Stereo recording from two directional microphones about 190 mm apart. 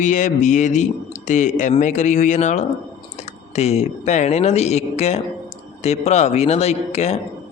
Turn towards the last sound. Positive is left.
turn(degrees=35)  # may be behind; listen again after turning